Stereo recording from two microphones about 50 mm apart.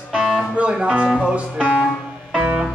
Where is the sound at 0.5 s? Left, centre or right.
Right.